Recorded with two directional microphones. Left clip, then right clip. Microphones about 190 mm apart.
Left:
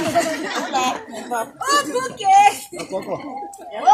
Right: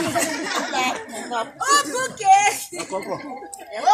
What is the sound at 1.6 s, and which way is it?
Speech, centre (ahead or behind).